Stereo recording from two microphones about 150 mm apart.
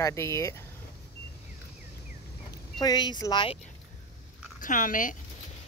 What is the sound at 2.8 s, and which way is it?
Speech, 30° left (ahead or behind).